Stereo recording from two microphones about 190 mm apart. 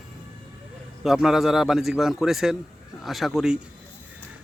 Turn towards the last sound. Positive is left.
turn(degrees=0)  # may be behind; listen again after turning